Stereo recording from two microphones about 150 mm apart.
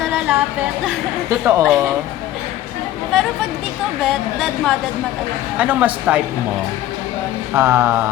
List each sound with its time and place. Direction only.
0.0 s a sound: 5° right (ahead or behind)
1.3 s a woman's voice: 15° right (ahead or behind)
1.6 s a woman's voice: centre (ahead or behind)
4.0 s a woman's voice: centre (ahead or behind)
7.5 s a woman's voice: 15° right (ahead or behind)